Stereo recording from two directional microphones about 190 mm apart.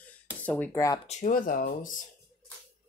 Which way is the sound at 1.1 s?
40° left (ahead or behind).